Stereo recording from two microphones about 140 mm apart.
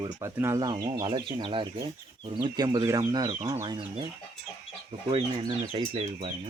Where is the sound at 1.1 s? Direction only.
40° right (ahead or behind); by 3.7 s 20° right (ahead or behind).